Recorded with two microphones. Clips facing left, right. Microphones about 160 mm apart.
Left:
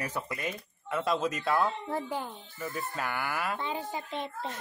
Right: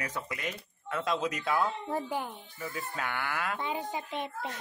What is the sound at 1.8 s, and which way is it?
Speech, 15° right (ahead or behind).